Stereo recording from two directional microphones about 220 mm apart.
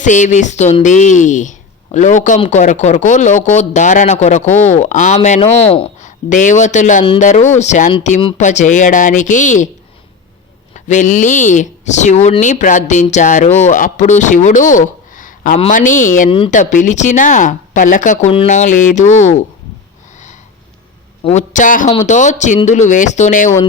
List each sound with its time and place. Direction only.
0.0 s speech: 35° left (ahead or behind)
10.8 s speech: 35° left (ahead or behind)
14.7 s a sound: 35° left (ahead or behind)
15.5 s speech: 30° left (ahead or behind)
16.3 s speech: 25° left (ahead or behind)
16.6 s speech: 35° left (ahead or behind)
21.2 s speech: 35° left (ahead or behind)